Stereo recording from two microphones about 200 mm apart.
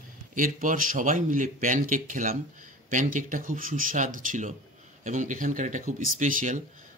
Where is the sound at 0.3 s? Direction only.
40° right (ahead or behind).